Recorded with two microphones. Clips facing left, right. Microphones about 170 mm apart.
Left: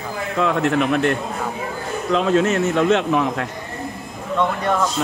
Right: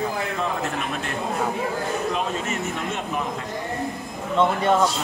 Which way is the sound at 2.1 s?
90° left.